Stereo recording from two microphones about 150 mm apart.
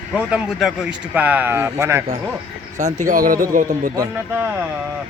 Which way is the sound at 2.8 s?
50° right (ahead or behind).